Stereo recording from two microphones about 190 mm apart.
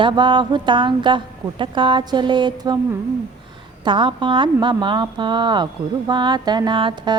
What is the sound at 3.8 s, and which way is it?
A woman's voice, 25° right (ahead or behind).